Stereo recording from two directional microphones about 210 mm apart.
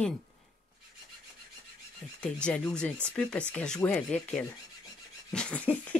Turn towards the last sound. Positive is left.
turn(degrees=5)  # may be behind; listen again after turning